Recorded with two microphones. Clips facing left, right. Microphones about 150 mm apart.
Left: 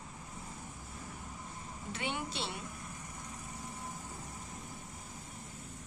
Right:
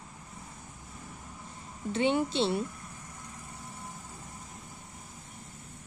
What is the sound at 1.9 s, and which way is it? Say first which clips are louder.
Speech: right 12 dB; 30° right (ahead or behind).